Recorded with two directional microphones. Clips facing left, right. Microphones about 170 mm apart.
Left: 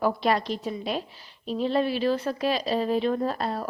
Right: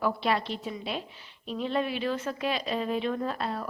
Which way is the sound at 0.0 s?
40° left (ahead or behind).